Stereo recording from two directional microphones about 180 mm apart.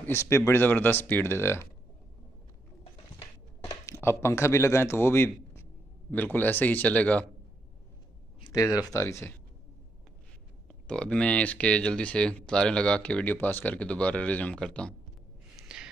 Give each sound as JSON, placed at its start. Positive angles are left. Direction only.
{"t": 0.0, "sound": "speech", "side_deg": 15}
{"t": 2.8, "sound": "a sound", "side_deg": 25}
{"t": 8.5, "sound": "speech", "side_deg": 20}
{"t": 10.7, "sound": "speech", "side_deg": 5}